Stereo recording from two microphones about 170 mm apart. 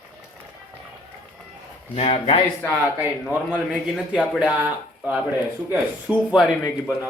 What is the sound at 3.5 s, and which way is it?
Speech, centre (ahead or behind).